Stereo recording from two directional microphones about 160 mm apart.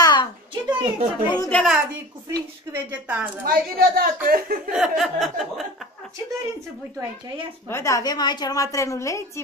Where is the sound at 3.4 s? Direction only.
65° right (ahead or behind).